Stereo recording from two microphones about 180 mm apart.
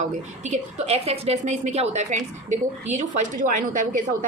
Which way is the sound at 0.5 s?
35° right (ahead or behind).